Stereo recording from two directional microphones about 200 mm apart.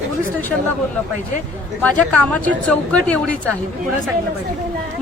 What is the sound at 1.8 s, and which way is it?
Speech, 5° left (ahead or behind).